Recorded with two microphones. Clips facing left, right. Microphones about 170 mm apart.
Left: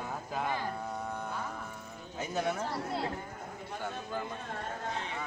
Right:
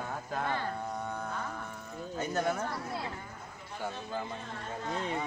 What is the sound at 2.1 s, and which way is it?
Speech, centre (ahead or behind).